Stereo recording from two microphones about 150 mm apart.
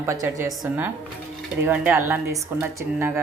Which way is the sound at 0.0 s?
20° right (ahead or behind).